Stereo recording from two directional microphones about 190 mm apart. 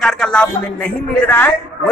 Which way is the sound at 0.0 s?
5° left (ahead or behind).